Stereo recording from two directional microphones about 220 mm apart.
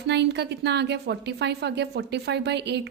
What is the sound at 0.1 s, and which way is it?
A woman's voice, 50° right (ahead or behind).